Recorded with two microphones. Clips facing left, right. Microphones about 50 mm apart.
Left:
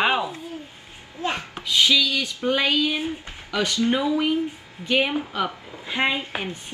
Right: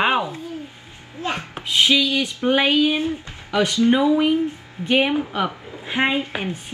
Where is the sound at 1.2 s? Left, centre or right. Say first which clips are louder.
Right 1 dB; right.